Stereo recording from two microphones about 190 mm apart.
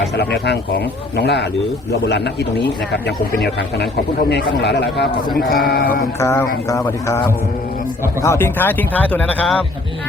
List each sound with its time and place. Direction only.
0.2 s a man's voice: 60° left (ahead or behind)
4.3 s a man's voice: 65° left (ahead or behind)
5.6 s a sound: 50° left (ahead or behind)
6.1 s speech: 15° left (ahead or behind)
8.2 s speech: 15° left (ahead or behind)